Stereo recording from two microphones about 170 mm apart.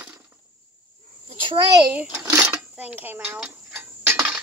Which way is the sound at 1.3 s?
30° right (ahead or behind).